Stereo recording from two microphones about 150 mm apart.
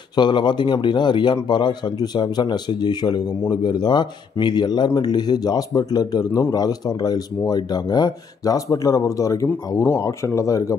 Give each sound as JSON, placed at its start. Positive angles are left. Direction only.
{"t": 0.1, "sound": "a man's voice", "side_deg": 30}